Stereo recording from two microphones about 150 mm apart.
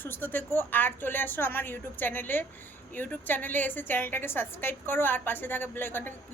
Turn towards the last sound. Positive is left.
turn(degrees=15)  # may be behind; listen again after turning